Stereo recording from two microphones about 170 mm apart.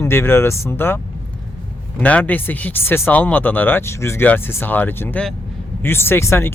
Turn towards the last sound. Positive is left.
turn(degrees=15)  # may be behind; listen again after turning